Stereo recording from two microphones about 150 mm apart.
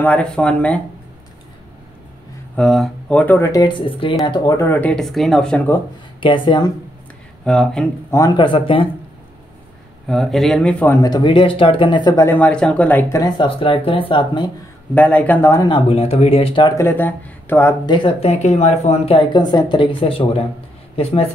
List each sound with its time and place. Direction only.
0.0 s speech: 10° left (ahead or behind)
2.5 s speech: 5° left (ahead or behind)
6.2 s speech: 35° left (ahead or behind)
7.4 s speech: 5° left (ahead or behind)
8.4 s speech: 35° left (ahead or behind)
10.0 s speech: centre (ahead or behind)
11.0 s speech: 30° left (ahead or behind)
12.3 s speech: 10° left (ahead or behind)
13.2 s speech: 35° left (ahead or behind)
15.0 s speech: 10° left (ahead or behind)
15.5 s speech: 25° left (ahead or behind)
15.9 s speech: 45° left (ahead or behind)
16.7 s speech: 15° left (ahead or behind)
17.8 s speech: 35° left (ahead or behind)